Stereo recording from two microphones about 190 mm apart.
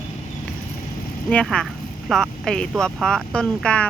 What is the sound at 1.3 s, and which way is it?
Speech, 5° left (ahead or behind).